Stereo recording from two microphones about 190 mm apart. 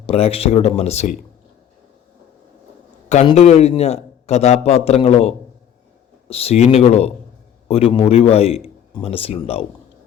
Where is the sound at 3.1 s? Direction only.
30° left (ahead or behind).